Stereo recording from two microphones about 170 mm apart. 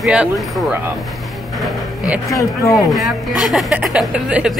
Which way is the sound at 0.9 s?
Centre (ahead or behind).